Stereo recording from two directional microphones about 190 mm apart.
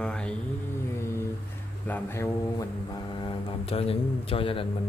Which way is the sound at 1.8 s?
10° left (ahead or behind).